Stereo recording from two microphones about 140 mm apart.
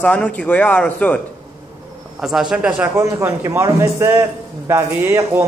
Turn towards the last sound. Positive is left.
turn(degrees=-15)  # may be behind; listen again after turning